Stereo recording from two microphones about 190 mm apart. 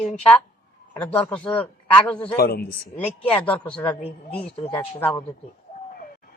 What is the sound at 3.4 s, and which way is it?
A man's voice, 5° left (ahead or behind).